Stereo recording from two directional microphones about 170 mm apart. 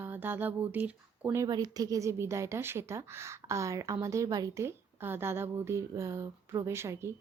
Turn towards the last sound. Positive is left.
turn(degrees=-15)  # may be behind; listen again after turning